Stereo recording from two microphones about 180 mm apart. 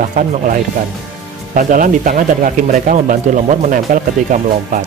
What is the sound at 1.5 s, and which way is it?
Speech, 50° right (ahead or behind).